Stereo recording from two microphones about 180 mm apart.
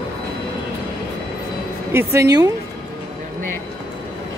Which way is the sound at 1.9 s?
15° right (ahead or behind).